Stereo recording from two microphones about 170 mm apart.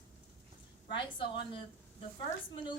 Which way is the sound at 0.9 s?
30° left (ahead or behind).